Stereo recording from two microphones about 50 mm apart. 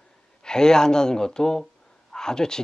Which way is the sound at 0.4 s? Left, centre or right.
Centre.